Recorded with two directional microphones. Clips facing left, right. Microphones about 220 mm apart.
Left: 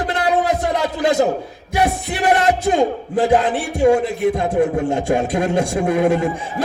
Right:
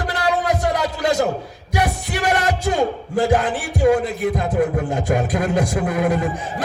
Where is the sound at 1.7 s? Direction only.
25° left (ahead or behind).